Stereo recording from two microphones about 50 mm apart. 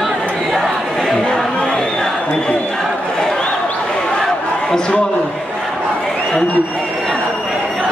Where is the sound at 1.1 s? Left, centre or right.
Centre.